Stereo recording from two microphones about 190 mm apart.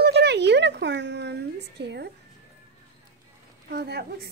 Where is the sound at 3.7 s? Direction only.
60° right (ahead or behind).